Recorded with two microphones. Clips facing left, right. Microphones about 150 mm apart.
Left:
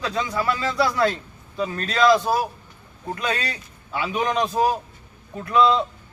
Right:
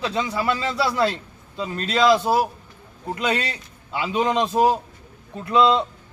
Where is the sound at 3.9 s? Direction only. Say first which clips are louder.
Right 2 dB; 20° right (ahead or behind).